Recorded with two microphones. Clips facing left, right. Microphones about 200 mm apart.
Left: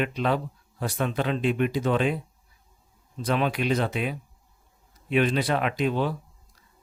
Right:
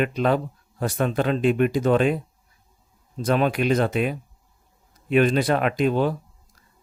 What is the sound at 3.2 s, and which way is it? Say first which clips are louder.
Speech: right 4 dB; 45° right (ahead or behind).